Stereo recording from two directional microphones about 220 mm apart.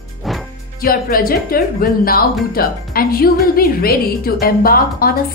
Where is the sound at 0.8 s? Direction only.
40° left (ahead or behind).